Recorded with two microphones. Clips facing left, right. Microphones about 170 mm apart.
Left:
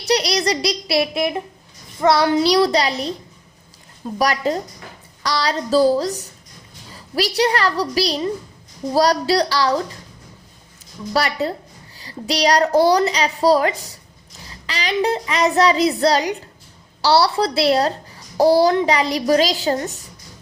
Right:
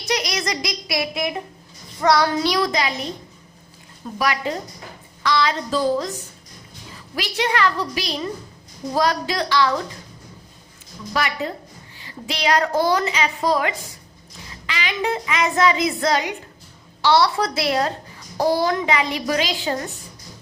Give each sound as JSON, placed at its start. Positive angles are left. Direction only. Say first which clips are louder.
{"t": 0.1, "sound": "speech", "louder": "left 6 dB", "side_deg": 35}
{"t": 2.0, "sound": "child singing", "louder": "left 3 dB", "side_deg": 25}
{"t": 2.5, "sound": "a woman's voice", "louder": "left 5 dB", "side_deg": 35}
{"t": 4.2, "sound": "a woman's voice", "louder": "left 4 dB", "side_deg": 40}
{"t": 11.1, "sound": "a woman's voice", "louder": "left 4 dB", "side_deg": 35}